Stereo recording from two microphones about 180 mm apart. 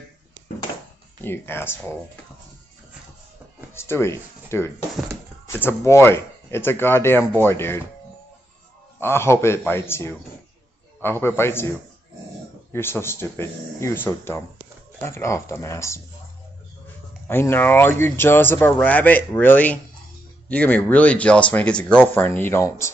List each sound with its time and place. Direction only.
1.2 s speech: 10° left (ahead or behind)
3.7 s speech: 15° left (ahead or behind)
9.0 s speech: 15° left (ahead or behind)
12.7 s speech: 15° left (ahead or behind)
17.3 s speech: 10° left (ahead or behind)